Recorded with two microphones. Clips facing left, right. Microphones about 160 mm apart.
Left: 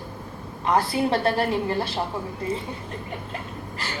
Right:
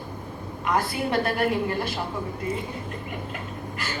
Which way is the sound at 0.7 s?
30° left (ahead or behind).